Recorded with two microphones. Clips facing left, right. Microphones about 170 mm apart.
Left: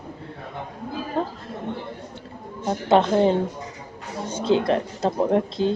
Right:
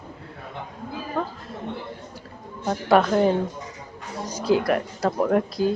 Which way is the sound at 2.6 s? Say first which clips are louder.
Even; 25° left (ahead or behind).